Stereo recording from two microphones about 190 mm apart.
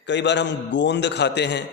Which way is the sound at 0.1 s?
70° left (ahead or behind).